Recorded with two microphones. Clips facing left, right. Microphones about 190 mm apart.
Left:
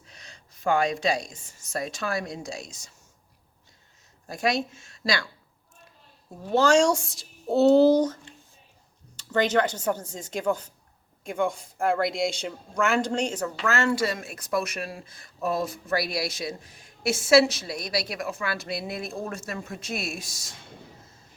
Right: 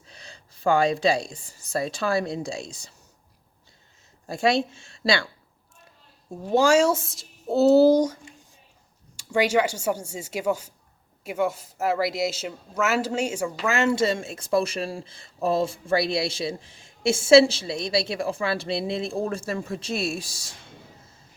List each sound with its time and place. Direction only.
0.1 s a woman's voice: 30° right (ahead or behind)
4.3 s speech: 30° right (ahead or behind)
6.4 s speech: 10° right (ahead or behind); by 20.5 s 30° right (ahead or behind)